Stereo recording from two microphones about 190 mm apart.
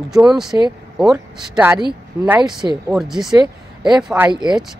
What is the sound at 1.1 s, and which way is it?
Speech, 15° right (ahead or behind).